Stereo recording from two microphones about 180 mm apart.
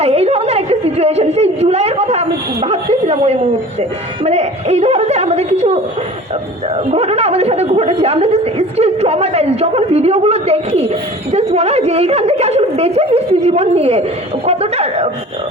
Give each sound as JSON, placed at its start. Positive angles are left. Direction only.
{"t": 0.0, "sound": "a sound", "side_deg": -35}
{"t": 3.8, "sound": "speech", "side_deg": -35}
{"t": 6.7, "sound": "a woman's voice", "side_deg": -35}